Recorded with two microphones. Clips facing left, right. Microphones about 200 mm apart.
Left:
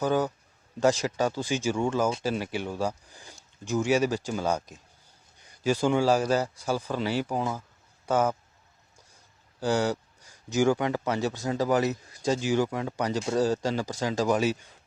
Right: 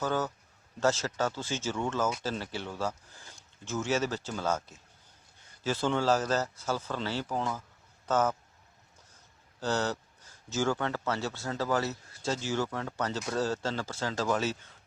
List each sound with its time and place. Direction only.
0.0 s speech: 15° left (ahead or behind)
9.6 s speech: 10° left (ahead or behind)